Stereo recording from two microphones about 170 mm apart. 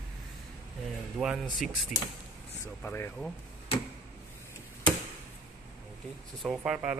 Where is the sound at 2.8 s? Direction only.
15° left (ahead or behind).